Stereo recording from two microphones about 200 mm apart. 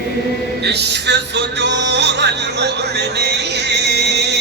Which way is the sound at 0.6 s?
55° right (ahead or behind).